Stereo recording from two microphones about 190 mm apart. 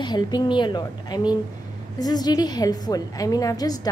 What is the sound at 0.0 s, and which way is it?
A woman's voice, 25° left (ahead or behind).